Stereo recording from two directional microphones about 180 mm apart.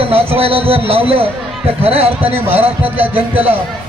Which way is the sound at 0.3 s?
30° right (ahead or behind).